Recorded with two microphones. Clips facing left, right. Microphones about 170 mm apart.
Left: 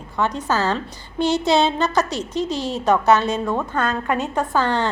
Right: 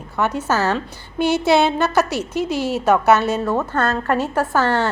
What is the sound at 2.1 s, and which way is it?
Speech, 65° right (ahead or behind).